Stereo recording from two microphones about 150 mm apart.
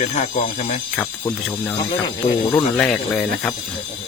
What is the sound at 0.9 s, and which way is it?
Speech, 15° left (ahead or behind).